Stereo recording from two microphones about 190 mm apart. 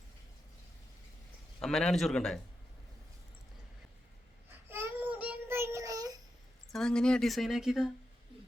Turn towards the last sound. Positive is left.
turn(degrees=0)  # may be behind; listen again after turning